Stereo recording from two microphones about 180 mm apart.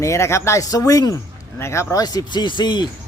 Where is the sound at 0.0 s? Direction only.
15° left (ahead or behind).